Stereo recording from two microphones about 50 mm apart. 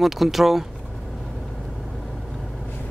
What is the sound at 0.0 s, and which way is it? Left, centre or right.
Speech, centre.